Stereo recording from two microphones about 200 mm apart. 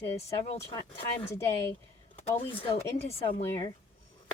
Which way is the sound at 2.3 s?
25° left (ahead or behind).